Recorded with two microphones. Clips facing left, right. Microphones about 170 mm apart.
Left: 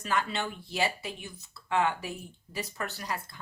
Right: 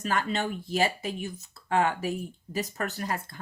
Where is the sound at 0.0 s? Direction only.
45° right (ahead or behind).